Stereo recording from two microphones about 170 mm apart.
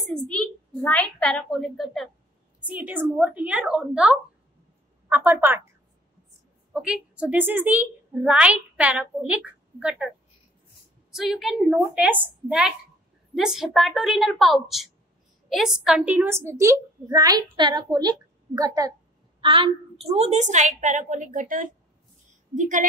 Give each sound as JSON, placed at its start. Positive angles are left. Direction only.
{"t": 0.3, "sound": "a woman's voice", "side_deg": 5}
{"t": 6.7, "sound": "a woman's voice", "side_deg": -5}